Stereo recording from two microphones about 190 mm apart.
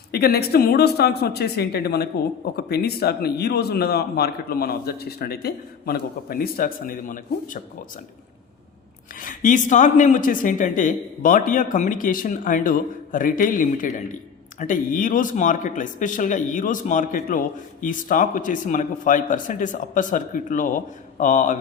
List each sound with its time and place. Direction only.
0.1 s a man's voice: 55° left (ahead or behind)
9.2 s speech: 40° left (ahead or behind)